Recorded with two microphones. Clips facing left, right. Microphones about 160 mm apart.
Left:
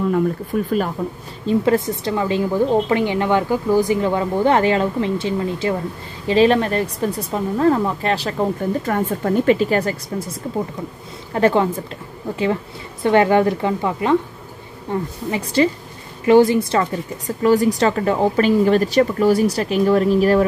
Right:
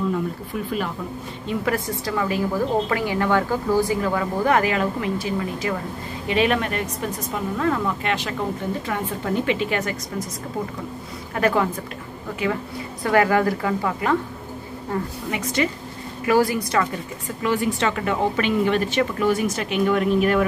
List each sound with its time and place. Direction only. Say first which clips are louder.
0.7 s speech: left 4 dB; 45° left (ahead or behind)
1.5 s a woman's voice: left 7 dB; 30° left (ahead or behind)
11.3 s a woman's voice: left 5 dB; 30° left (ahead or behind)
13.0 s a woman's voice: left 4 dB; 25° left (ahead or behind)
15.3 s a woman's voice: left 6 dB; 30° left (ahead or behind)
17.4 s a woman's voice: left 7 dB; 40° left (ahead or behind)